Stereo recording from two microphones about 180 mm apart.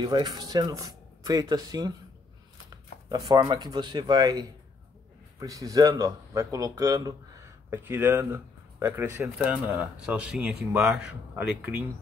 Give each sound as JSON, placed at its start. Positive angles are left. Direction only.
{"t": 0.0, "sound": "speech", "side_deg": -25}